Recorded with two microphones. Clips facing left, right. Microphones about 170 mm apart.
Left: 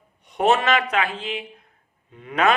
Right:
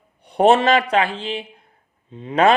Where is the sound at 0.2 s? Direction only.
35° right (ahead or behind).